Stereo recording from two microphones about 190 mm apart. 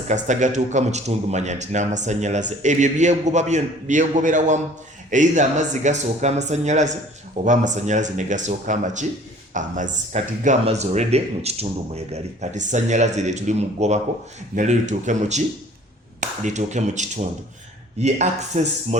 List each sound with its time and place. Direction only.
0.1 s a man's voice: 40° right (ahead or behind)